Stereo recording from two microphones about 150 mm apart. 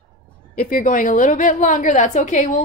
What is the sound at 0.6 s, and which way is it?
A woman's voice, 65° left (ahead or behind).